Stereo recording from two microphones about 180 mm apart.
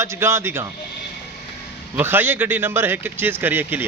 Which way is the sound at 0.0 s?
15° right (ahead or behind).